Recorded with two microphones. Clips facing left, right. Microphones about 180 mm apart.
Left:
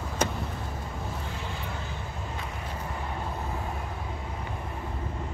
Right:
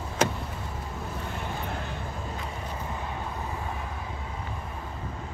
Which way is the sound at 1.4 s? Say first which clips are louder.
Right 3 dB; 55° right (ahead or behind).